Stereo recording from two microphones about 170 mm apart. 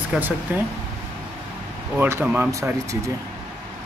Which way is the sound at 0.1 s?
5° right (ahead or behind).